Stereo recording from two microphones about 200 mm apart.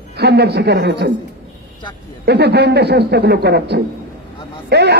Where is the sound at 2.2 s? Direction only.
55° right (ahead or behind).